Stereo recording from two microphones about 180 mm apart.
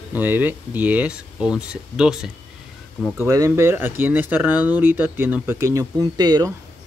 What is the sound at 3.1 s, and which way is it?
Speech, 15° right (ahead or behind).